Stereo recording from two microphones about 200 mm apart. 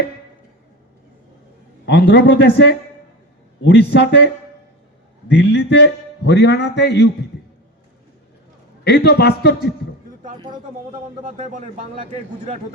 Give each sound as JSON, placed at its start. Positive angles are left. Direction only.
{"t": 1.8, "sound": "a man's voice", "side_deg": 60}
{"t": 5.3, "sound": "a man's voice", "side_deg": 60}
{"t": 8.8, "sound": "a man's voice", "side_deg": 55}
{"t": 10.3, "sound": "speech", "side_deg": -20}
{"t": 11.2, "sound": "a man's voice", "side_deg": -40}